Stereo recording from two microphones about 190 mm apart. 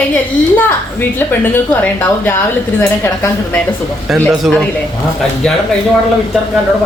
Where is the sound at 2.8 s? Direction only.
10° left (ahead or behind).